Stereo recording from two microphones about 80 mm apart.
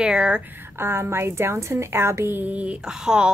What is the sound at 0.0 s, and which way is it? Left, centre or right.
Speech, centre.